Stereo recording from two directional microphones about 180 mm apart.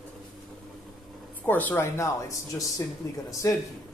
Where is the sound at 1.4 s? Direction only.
10° left (ahead or behind).